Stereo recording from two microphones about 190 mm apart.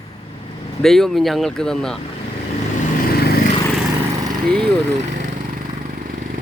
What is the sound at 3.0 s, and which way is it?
Vehicle, 55° left (ahead or behind).